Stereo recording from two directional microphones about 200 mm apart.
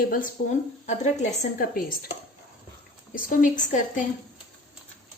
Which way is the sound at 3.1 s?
40° left (ahead or behind).